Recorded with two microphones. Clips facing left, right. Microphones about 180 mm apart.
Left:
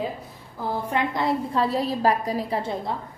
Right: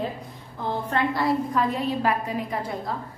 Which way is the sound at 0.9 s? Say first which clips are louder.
Right 1 dB; 20° left (ahead or behind).